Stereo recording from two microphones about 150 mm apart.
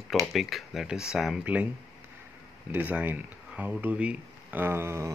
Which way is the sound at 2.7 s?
10° right (ahead or behind).